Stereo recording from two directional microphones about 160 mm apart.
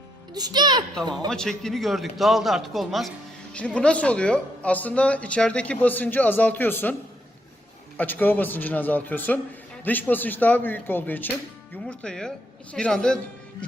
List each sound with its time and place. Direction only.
0.3 s a child's voice: 25° right (ahead or behind)
1.3 s a man's voice: 5° left (ahead or behind)
7.9 s a man's voice: 10° left (ahead or behind)